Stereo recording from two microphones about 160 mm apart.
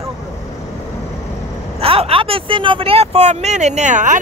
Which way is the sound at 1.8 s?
35° right (ahead or behind).